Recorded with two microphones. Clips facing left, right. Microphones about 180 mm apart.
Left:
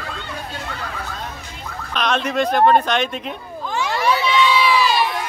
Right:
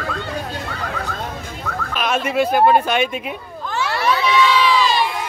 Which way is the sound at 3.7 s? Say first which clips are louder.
Even; 15° left (ahead or behind).